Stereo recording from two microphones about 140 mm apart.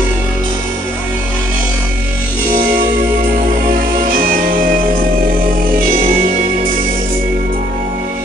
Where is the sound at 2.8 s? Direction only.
85° right.